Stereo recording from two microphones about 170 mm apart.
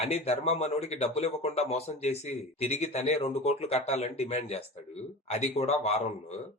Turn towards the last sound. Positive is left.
turn(degrees=40)  # may be behind; listen again after turning